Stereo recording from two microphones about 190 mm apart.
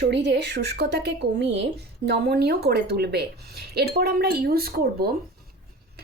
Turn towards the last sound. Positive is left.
turn(degrees=-55)  # may be behind; listen again after turning